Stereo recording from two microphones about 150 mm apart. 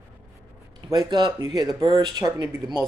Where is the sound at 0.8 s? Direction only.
30° right (ahead or behind).